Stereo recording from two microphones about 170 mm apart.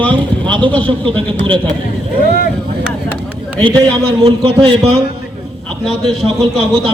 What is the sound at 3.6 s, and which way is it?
Speech, 20° right (ahead or behind).